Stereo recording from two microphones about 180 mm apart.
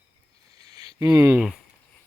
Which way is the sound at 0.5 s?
20° right (ahead or behind).